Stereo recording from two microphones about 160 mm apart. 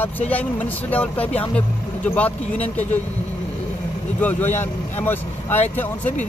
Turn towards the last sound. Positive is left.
turn(degrees=10)  # may be behind; listen again after turning